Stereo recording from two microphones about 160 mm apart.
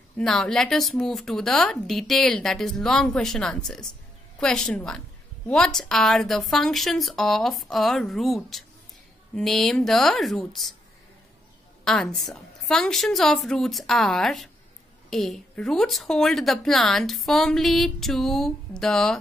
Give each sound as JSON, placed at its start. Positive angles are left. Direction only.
{"t": 0.2, "sound": "a woman's voice", "side_deg": 5}
{"t": 11.8, "sound": "a woman's voice", "side_deg": 5}